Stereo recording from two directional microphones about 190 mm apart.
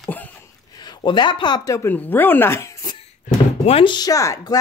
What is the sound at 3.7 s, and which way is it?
Speech, 25° left (ahead or behind).